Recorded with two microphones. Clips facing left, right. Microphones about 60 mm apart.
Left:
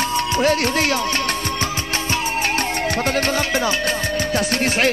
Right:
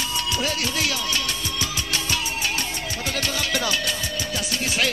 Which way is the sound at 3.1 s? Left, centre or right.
Left.